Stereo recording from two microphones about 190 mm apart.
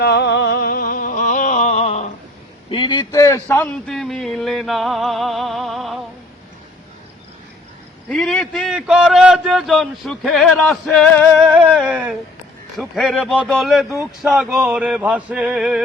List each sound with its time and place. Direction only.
0.0 s a sound: 60° left (ahead or behind); by 2.0 s 35° left (ahead or behind)
2.6 s a man's voice: 25° left (ahead or behind); by 6.0 s centre (ahead or behind)
8.1 s a man's voice: 5° left (ahead or behind)